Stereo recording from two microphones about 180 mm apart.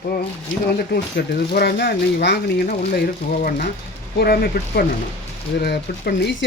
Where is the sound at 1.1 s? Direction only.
65° left (ahead or behind).